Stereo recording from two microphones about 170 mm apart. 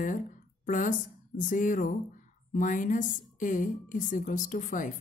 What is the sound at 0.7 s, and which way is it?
A woman's voice, 50° left (ahead or behind).